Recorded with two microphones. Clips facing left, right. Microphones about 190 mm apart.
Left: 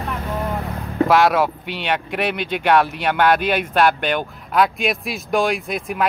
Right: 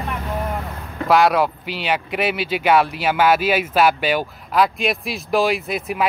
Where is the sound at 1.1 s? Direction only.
Centre (ahead or behind).